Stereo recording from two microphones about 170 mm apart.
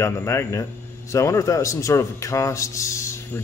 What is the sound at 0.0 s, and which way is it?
A man's voice, 15° left (ahead or behind).